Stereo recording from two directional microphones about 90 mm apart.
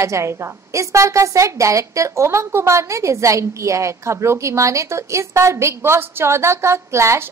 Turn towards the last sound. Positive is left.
turn(degrees=-30)  # may be behind; listen again after turning